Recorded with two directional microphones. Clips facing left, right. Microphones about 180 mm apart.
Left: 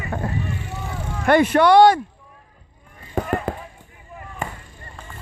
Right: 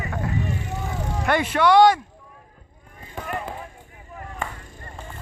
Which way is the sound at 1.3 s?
50° left (ahead or behind).